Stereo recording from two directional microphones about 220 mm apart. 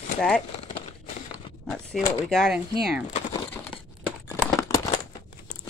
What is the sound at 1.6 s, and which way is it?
Speech, centre (ahead or behind).